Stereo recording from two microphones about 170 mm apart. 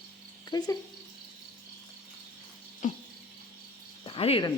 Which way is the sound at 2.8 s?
45° left (ahead or behind).